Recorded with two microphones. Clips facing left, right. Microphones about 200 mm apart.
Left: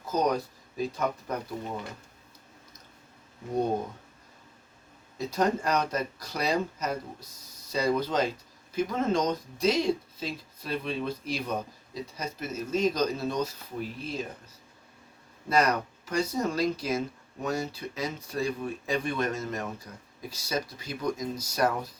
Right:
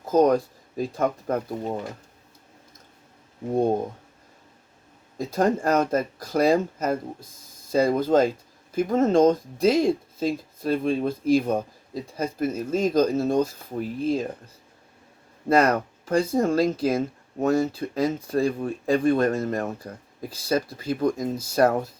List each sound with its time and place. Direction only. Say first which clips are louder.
0.1 s speech: right 8 dB; 50° right (ahead or behind)
5.1 s speech: right 4 dB; 50° right (ahead or behind)
15.4 s speech: right 6 dB; 50° right (ahead or behind)